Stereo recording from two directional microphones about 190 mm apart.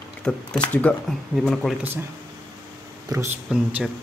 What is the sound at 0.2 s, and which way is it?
Speech, 5° left (ahead or behind).